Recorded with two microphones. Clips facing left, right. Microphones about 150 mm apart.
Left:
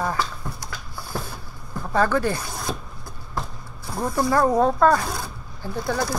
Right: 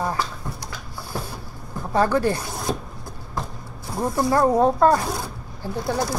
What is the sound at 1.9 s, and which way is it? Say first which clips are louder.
Speech: right 1 dB; 35° right (ahead or behind).